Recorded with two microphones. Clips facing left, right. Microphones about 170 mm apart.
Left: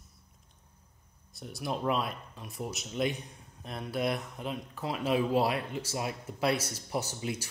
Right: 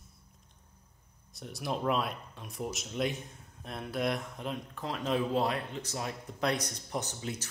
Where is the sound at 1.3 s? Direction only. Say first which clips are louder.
Even; centre (ahead or behind).